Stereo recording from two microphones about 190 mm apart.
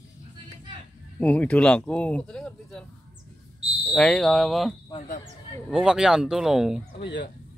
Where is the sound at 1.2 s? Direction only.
5° left (ahead or behind).